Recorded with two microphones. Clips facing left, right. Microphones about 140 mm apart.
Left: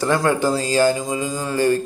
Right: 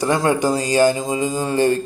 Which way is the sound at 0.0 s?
20° right (ahead or behind).